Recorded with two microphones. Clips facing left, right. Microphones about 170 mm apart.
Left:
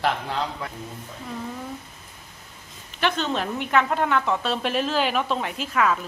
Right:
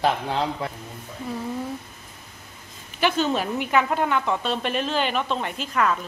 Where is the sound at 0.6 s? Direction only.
25° right (ahead or behind).